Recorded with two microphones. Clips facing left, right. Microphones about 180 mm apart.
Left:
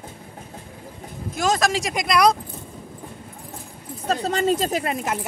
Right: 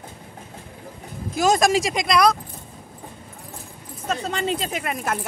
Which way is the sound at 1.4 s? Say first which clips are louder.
Right 3 dB; 10° right (ahead or behind).